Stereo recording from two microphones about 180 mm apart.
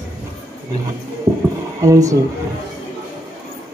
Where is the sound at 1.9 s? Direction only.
20° right (ahead or behind).